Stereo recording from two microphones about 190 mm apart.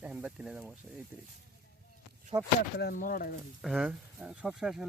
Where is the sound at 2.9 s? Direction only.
45° left (ahead or behind).